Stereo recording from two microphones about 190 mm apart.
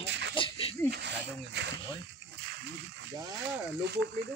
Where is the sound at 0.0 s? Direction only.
70° right (ahead or behind).